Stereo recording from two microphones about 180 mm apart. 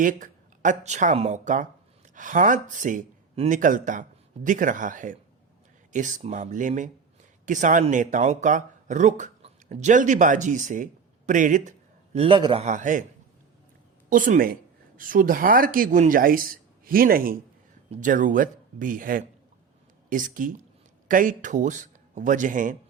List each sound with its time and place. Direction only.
0.0 s speech: 50° right (ahead or behind)
12.1 s a man's voice: 30° right (ahead or behind)
12.6 s speech: 45° right (ahead or behind)
14.1 s speech: 50° right (ahead or behind)